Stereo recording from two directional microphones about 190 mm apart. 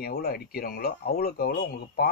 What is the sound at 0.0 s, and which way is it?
Speech, 55° left (ahead or behind).